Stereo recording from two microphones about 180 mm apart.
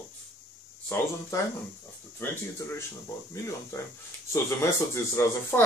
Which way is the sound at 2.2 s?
15° left (ahead or behind).